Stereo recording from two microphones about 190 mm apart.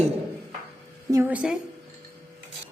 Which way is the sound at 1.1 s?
10° right (ahead or behind).